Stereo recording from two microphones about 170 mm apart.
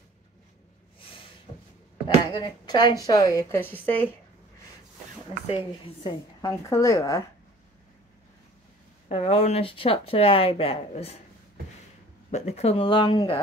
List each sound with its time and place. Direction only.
2.3 s a woman's voice: 25° left (ahead or behind)
5.5 s speech: 35° left (ahead or behind)
6.4 s a woman's voice: 20° left (ahead or behind)
9.1 s speech: 35° left (ahead or behind)
12.3 s speech: 40° left (ahead or behind)